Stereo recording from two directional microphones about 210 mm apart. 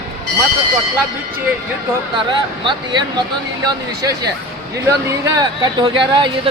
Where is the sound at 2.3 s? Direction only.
25° right (ahead or behind).